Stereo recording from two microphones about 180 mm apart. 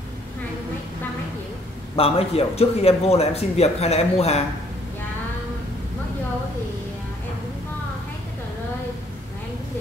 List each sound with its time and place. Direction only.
2.0 s speech: 35° left (ahead or behind)